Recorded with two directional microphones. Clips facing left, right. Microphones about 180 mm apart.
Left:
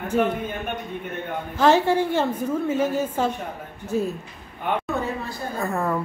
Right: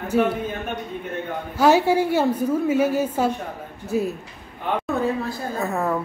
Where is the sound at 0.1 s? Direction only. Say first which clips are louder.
Right 2 dB; 10° right (ahead or behind).